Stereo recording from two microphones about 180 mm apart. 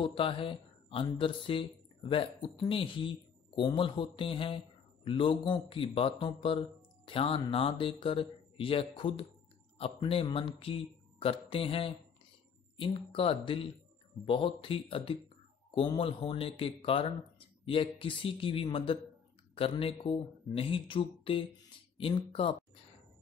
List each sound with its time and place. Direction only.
0.0 s speech: 30° left (ahead or behind)